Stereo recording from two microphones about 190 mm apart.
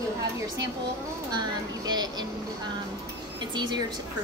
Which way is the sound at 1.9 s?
20° right (ahead or behind).